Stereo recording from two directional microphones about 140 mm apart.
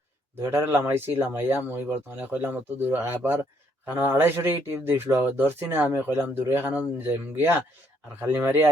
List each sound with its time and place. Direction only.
0.3 s speech: 20° right (ahead or behind)